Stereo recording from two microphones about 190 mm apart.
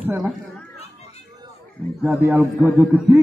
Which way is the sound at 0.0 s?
10° right (ahead or behind).